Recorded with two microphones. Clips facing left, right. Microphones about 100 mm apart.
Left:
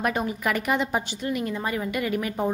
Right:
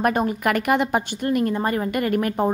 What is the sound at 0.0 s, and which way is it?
A woman's voice, 50° right (ahead or behind).